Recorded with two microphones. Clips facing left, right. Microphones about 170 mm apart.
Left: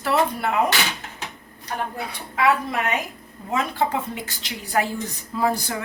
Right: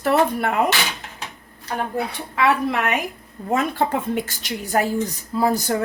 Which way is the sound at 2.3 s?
65° right (ahead or behind).